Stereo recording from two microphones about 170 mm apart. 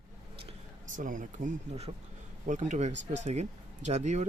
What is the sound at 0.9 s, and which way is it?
Speech, 50° right (ahead or behind).